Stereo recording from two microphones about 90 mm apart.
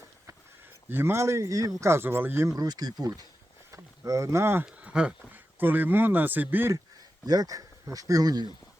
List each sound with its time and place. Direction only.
0.9 s speech: 25° right (ahead or behind)
2.5 s speech: 45° right (ahead or behind)
3.7 s a sound: 35° right (ahead or behind)
4.6 s speech: 10° right (ahead or behind)
7.3 s speech: 45° right (ahead or behind)